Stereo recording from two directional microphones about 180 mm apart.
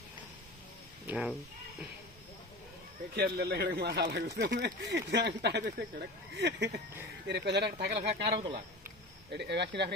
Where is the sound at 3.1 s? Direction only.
60° right (ahead or behind).